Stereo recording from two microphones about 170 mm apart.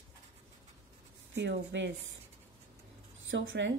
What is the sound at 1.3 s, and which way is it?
Speech, 90° right.